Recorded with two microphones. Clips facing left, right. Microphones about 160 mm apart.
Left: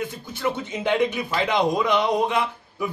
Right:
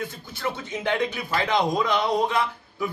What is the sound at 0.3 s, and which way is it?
A man's voice, 20° left (ahead or behind).